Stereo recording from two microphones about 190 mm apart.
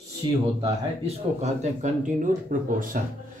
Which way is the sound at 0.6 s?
35° right (ahead or behind).